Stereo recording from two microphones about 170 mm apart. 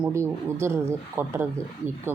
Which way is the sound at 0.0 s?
15° right (ahead or behind).